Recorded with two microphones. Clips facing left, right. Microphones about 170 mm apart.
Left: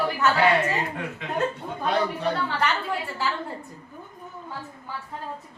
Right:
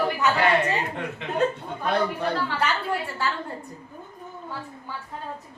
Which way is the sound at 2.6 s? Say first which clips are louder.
Even; centre (ahead or behind).